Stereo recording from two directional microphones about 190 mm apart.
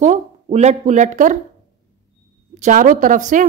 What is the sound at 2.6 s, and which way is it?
Speech, 45° right (ahead or behind).